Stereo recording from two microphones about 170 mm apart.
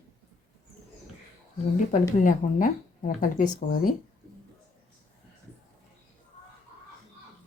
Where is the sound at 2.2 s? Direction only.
50° left (ahead or behind).